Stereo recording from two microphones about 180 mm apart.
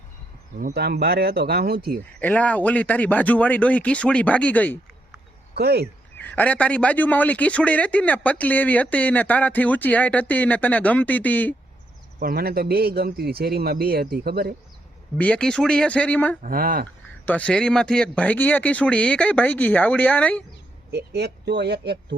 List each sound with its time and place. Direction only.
0.6 s a man's voice: 60° right (ahead or behind)
2.1 s a man's voice: 10° left (ahead or behind)
5.5 s a man's voice: 65° right (ahead or behind)
6.1 s a man's voice: 10° left (ahead or behind)
12.2 s a man's voice: 60° right (ahead or behind)
15.2 s a man's voice: 5° left (ahead or behind)
16.4 s speech: 55° right (ahead or behind)
17.2 s a man's voice: 5° left (ahead or behind)
20.9 s speech: 65° right (ahead or behind)